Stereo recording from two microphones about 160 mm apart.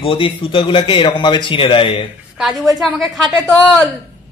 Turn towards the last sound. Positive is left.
turn(degrees=5)  # may be behind; listen again after turning